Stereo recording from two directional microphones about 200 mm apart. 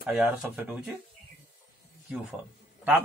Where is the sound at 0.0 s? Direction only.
5° right (ahead or behind).